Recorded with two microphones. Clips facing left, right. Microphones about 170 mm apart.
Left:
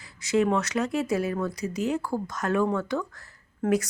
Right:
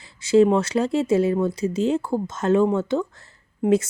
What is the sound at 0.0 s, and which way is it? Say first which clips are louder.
Speech: right 8 dB; 30° right (ahead or behind).